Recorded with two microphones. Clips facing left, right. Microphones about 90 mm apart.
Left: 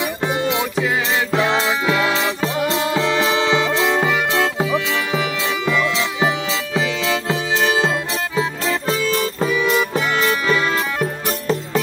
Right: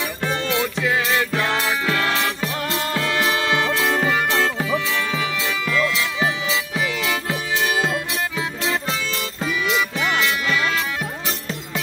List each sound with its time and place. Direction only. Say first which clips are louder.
0.0 s music: left 4 dB; 20° left (ahead or behind)
8.4 s music: left 3 dB; 40° left (ahead or behind)